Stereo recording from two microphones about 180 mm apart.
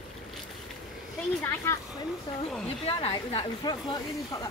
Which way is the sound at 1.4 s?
15° left (ahead or behind).